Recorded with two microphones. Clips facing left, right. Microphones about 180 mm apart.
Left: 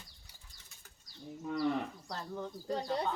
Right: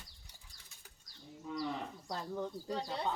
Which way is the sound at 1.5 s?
60° left (ahead or behind).